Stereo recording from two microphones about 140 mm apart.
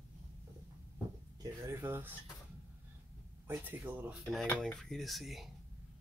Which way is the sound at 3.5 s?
15° right (ahead or behind).